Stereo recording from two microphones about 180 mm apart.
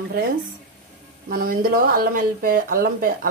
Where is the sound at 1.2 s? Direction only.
55° right (ahead or behind).